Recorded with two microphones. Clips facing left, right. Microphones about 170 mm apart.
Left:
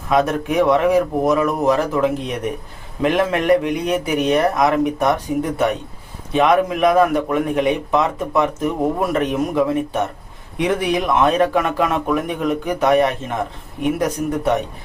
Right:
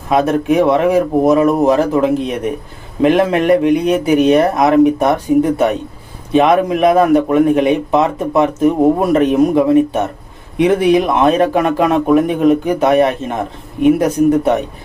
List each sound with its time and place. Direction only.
0.1 s a man's voice: 25° right (ahead or behind)